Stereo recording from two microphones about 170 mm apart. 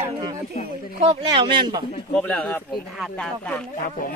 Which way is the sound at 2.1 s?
5° left (ahead or behind).